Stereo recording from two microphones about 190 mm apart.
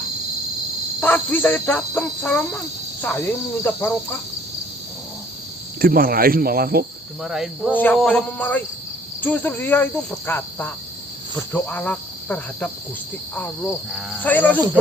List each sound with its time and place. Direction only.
0.9 s cricket: 10° left (ahead or behind)
3.6 s speech: 10° left (ahead or behind)
5.8 s cricket: 50° right (ahead or behind)
7.2 s speech: centre (ahead or behind)
7.7 s speech: 10° left (ahead or behind)
14.2 s speech: 10° left (ahead or behind)